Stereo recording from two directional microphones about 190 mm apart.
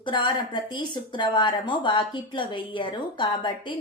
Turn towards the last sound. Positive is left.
turn(degrees=25)  # may be behind; listen again after turning